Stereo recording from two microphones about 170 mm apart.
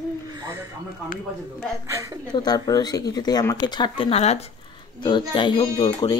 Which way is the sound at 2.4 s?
25° left (ahead or behind).